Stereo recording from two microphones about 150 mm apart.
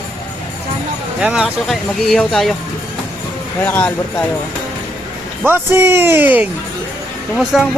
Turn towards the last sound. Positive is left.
turn(degrees=0)  # may be behind; listen again after turning